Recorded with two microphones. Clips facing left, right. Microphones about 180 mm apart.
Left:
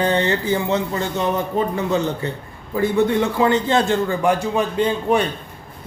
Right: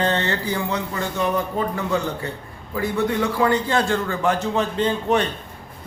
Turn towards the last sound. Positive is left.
turn(degrees=10)  # may be behind; listen again after turning